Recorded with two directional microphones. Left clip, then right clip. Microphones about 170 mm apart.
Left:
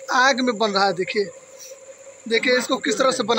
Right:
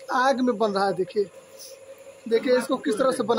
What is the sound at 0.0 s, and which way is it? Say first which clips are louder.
A man's voice: left 4 dB; 10° left (ahead or behind).